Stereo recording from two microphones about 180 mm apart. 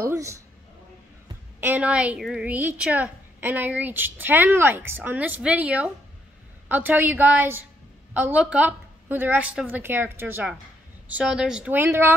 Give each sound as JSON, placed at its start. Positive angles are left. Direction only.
{"t": 0.0, "sound": "speech", "side_deg": -15}
{"t": 1.6, "sound": "a woman's voice", "side_deg": -10}